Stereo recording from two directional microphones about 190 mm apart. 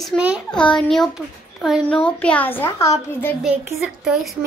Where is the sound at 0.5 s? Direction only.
5° left (ahead or behind).